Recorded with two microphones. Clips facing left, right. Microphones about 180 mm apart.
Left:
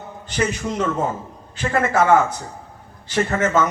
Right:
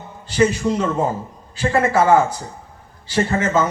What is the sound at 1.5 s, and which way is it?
A man's voice, 35° right (ahead or behind).